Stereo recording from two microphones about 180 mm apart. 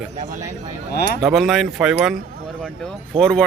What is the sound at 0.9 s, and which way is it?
Speech, 65° left (ahead or behind).